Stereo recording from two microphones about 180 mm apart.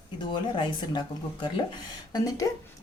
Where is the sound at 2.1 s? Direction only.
20° left (ahead or behind).